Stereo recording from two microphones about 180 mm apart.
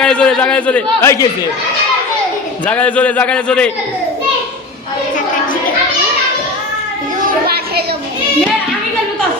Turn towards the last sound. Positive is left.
turn(degrees=-60)  # may be behind; listen again after turning